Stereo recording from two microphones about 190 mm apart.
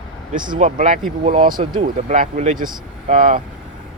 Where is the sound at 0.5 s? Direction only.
40° right (ahead or behind).